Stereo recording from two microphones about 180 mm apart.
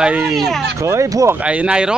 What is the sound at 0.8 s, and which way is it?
Speech, 15° right (ahead or behind).